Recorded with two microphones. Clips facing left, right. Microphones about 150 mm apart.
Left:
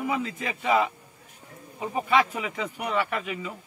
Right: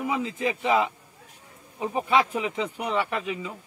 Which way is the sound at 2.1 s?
20° right (ahead or behind).